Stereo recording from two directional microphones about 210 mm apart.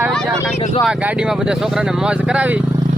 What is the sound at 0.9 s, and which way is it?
Speech, 5° right (ahead or behind).